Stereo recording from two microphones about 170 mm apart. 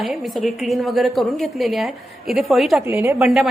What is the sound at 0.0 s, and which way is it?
A woman's voice, centre (ahead or behind).